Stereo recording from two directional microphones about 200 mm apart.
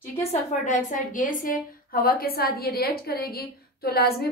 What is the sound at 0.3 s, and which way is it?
A woman's voice, 40° left (ahead or behind).